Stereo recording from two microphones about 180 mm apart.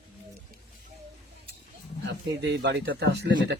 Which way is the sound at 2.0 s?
75° right (ahead or behind).